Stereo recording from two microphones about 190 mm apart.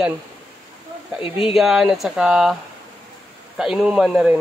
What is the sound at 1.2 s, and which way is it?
Speech, 30° left (ahead or behind).